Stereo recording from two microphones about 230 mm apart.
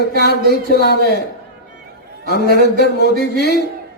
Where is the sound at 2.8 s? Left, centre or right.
Left.